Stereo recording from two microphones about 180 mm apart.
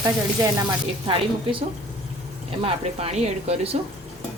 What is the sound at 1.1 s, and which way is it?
Speech, 30° right (ahead or behind).